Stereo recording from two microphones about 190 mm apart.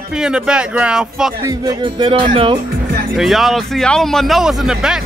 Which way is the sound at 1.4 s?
20° right (ahead or behind).